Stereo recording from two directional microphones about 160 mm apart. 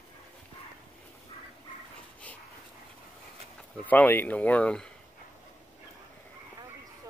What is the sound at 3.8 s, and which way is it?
Speech, 10° left (ahead or behind).